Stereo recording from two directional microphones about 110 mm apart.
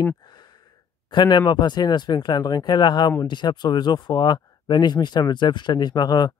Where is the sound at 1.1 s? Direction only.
40° left (ahead or behind).